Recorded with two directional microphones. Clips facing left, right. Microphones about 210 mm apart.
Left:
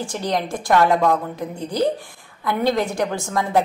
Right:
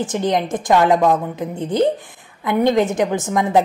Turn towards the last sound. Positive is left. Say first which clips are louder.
# right 4 dB
turn(degrees=-20)  # may be behind; listen again after turning